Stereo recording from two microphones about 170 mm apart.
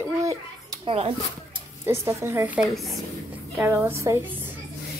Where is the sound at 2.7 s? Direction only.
Centre (ahead or behind).